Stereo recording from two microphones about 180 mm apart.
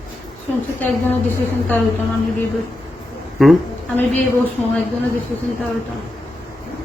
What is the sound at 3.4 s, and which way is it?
Speech, centre (ahead or behind).